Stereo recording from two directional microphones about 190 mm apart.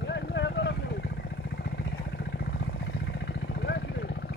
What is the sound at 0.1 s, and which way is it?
Vehicle, 65° left (ahead or behind).